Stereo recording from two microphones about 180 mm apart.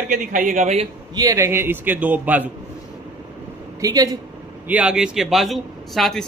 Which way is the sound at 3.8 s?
20° right (ahead or behind).